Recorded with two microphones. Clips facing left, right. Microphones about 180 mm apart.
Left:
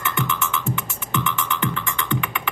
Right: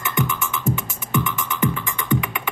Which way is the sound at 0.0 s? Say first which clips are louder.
Right 1 dB; 15° right (ahead or behind).